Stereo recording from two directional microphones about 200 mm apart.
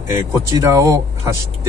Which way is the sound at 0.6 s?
15° right (ahead or behind).